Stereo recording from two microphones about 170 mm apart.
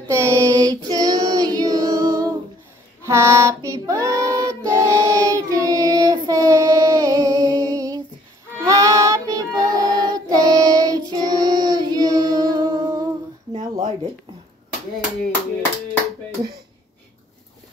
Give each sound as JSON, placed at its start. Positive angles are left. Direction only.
{"t": 0.1, "sound": "child singing", "side_deg": -15}
{"t": 3.1, "sound": "female singing", "side_deg": -15}
{"t": 3.8, "sound": "child singing", "side_deg": -20}